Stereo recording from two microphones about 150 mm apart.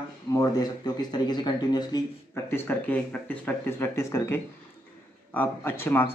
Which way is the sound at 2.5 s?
15° left (ahead or behind).